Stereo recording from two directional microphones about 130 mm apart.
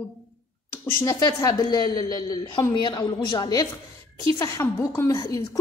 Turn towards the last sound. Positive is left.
turn(degrees=25)  # may be behind; listen again after turning